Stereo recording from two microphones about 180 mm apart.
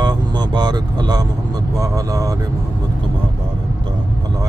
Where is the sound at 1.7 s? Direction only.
20° right (ahead or behind).